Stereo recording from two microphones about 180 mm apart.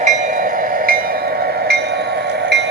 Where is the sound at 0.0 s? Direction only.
40° right (ahead or behind).